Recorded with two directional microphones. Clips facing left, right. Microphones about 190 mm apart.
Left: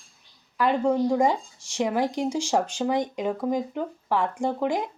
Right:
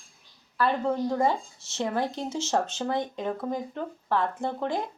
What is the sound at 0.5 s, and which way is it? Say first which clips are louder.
A woman's voice: left 4 dB; 15° left (ahead or behind).